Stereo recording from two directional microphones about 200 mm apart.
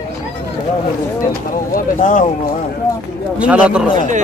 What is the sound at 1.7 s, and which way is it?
Speech, 40° left (ahead or behind).